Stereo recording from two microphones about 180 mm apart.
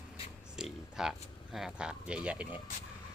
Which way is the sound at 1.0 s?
Centre (ahead or behind).